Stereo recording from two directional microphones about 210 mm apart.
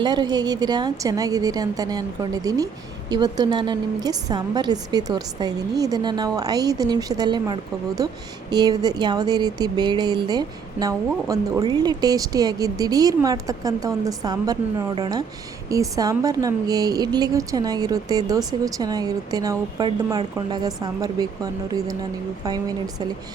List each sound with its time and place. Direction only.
0.0 s a woman's voice: 20° right (ahead or behind)